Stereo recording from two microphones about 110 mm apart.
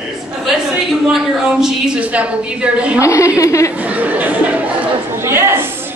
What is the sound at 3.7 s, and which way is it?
A woman's voice, 15° right (ahead or behind).